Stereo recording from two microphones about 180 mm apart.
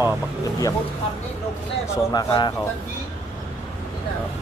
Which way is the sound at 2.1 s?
25° left (ahead or behind).